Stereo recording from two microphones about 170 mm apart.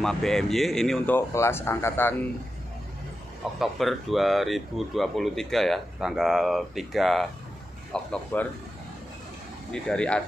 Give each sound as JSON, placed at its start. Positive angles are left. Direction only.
{"t": 0.0, "sound": "speech", "side_deg": 5}
{"t": 1.1, "sound": "speech", "side_deg": 15}
{"t": 3.5, "sound": "speech", "side_deg": 0}
{"t": 9.7, "sound": "speech", "side_deg": 5}